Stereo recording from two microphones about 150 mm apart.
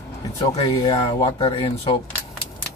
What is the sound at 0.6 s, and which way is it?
Speech, 35° left (ahead or behind).